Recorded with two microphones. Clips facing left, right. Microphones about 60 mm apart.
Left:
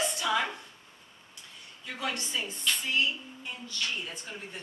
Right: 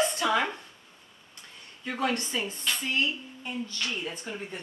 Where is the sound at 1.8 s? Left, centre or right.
Right.